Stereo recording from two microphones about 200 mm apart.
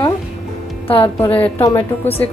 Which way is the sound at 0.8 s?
30° left (ahead or behind).